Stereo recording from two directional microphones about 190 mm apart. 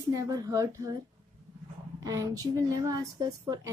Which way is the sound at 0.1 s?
20° right (ahead or behind).